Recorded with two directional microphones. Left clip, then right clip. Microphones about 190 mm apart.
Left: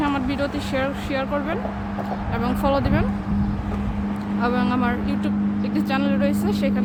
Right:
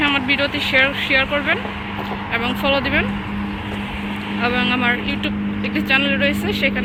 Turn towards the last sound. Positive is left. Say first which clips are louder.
# right 5 dB
turn(degrees=15)  # may be behind; listen again after turning